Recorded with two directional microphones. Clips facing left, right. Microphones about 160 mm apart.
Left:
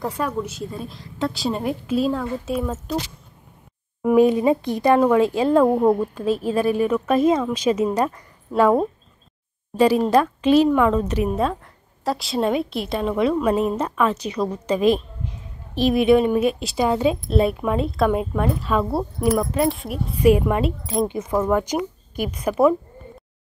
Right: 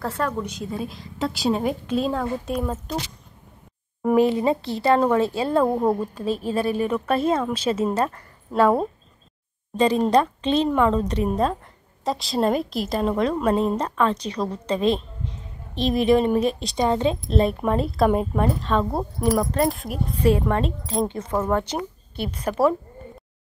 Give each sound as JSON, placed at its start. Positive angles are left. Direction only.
{"t": 0.0, "sound": "a woman's voice", "side_deg": 10}
{"t": 4.0, "sound": "a woman's voice", "side_deg": 15}
{"t": 20.2, "sound": "a woman's voice", "side_deg": 10}